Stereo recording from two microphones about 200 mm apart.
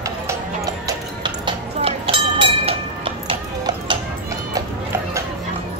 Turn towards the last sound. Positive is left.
turn(degrees=-25)  # may be behind; listen again after turning